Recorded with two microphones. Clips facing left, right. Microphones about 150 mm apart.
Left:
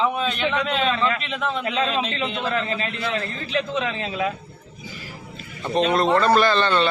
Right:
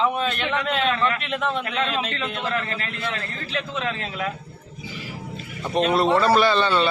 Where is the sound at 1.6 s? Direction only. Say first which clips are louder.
Left 2 dB; 15° left (ahead or behind).